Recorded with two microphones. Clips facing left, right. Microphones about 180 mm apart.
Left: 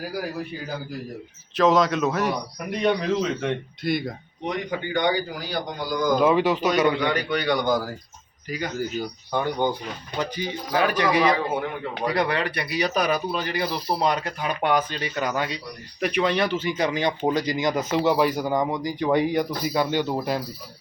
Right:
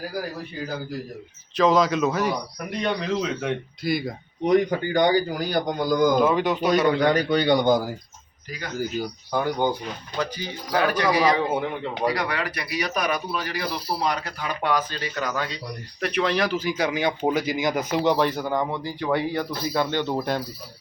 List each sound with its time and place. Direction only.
1.5 s speech: centre (ahead or behind)
4.4 s speech: 40° right (ahead or behind)
5.5 s a man's voice: 50° right (ahead or behind)
6.2 s speech: 5° left (ahead or behind)
6.9 s speech: 40° right (ahead or behind)
7.4 s speech: 25° right (ahead or behind)
8.8 s speech: 10° right (ahead or behind)
10.2 s speech: 20° left (ahead or behind)
16.0 s speech: centre (ahead or behind)